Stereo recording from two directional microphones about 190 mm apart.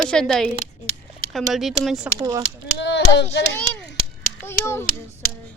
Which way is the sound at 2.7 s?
65° left (ahead or behind).